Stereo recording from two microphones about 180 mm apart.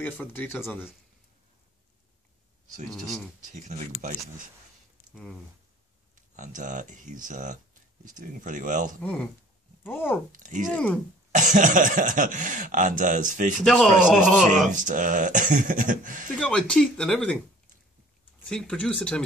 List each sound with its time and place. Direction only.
0.0 s speech: 10° left (ahead or behind)
2.9 s speech: centre (ahead or behind)
4.0 s speech: 45° right (ahead or behind)
6.1 s speech: 45° right (ahead or behind)
9.0 s speech: 5° left (ahead or behind)
10.3 s speech: 45° right (ahead or behind)
10.7 s speech: 5° left (ahead or behind)
11.3 s speech: 45° right (ahead or behind)
14.0 s speech: centre (ahead or behind)
14.7 s speech: 45° right (ahead or behind)
16.3 s speech: 5° left (ahead or behind)
18.5 s speech: 5° left (ahead or behind)